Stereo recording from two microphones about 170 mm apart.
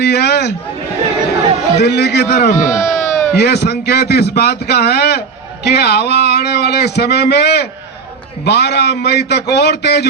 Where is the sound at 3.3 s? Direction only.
75° left (ahead or behind).